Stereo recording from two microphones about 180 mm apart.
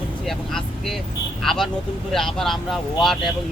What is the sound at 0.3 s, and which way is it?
Speech, centre (ahead or behind).